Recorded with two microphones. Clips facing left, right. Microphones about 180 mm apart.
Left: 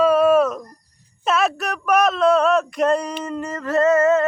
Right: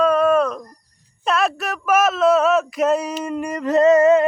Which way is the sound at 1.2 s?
Centre (ahead or behind).